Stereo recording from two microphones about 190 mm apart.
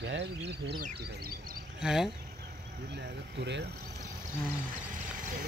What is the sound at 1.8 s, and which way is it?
Speech, 5° right (ahead or behind).